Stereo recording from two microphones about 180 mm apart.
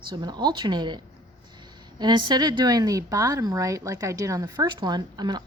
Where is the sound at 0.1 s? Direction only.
25° right (ahead or behind).